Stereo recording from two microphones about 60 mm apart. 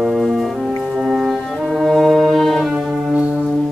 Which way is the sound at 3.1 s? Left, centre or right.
Centre.